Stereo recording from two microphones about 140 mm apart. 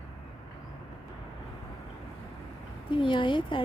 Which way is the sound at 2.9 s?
35° left (ahead or behind).